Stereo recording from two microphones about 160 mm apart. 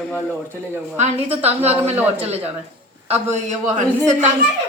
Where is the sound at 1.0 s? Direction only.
40° right (ahead or behind).